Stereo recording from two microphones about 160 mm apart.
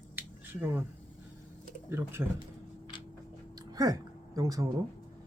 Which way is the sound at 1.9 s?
15° right (ahead or behind).